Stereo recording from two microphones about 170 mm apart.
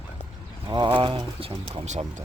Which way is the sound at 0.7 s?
25° right (ahead or behind).